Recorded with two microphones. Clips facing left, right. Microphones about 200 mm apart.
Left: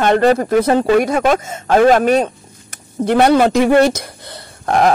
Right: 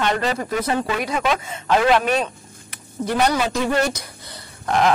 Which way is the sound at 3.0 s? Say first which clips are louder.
Left 9 dB; 60° left (ahead or behind).